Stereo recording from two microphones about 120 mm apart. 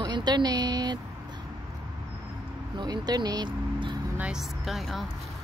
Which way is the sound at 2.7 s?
35° right (ahead or behind).